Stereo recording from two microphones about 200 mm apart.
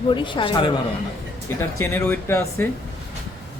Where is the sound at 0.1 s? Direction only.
25° left (ahead or behind).